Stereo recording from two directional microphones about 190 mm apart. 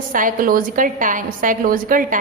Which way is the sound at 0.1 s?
45° right (ahead or behind).